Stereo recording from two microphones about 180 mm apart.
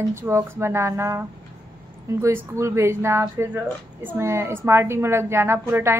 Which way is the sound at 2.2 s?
15° right (ahead or behind).